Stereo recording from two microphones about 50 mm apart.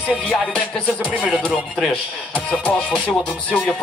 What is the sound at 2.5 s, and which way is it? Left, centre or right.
Music, centre.